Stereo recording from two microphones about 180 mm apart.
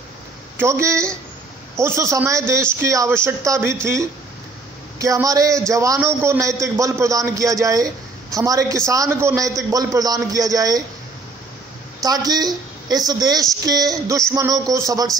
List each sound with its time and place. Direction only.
0.6 s a man's voice: 15° right (ahead or behind)
12.0 s speech: 20° right (ahead or behind)